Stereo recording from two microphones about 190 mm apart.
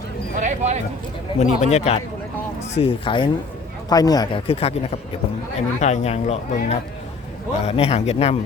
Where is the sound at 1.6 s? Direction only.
35° left (ahead or behind).